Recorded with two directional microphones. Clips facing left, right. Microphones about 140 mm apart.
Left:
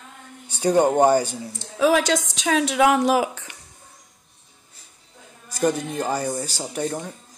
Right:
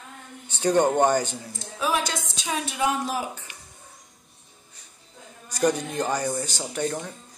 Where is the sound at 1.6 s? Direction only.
90° left.